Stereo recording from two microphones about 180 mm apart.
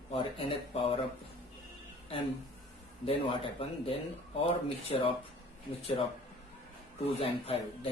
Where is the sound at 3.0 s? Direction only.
30° left (ahead or behind).